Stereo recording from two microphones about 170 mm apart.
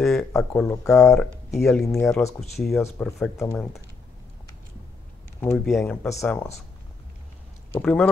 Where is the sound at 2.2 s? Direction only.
15° left (ahead or behind).